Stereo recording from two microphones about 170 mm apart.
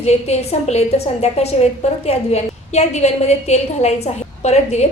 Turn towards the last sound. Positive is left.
turn(degrees=40)  # may be behind; listen again after turning